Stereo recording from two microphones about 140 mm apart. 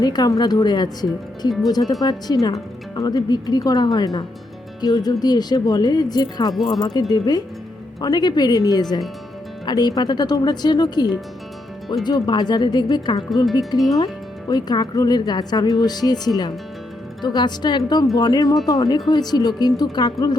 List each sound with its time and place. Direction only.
0.0 s speech: 30° left (ahead or behind)